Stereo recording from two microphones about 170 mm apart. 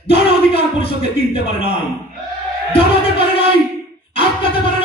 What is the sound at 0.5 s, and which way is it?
A man's voice, 35° left (ahead or behind).